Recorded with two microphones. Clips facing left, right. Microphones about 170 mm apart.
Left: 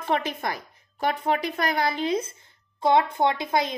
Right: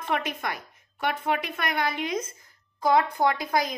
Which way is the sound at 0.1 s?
30° left (ahead or behind).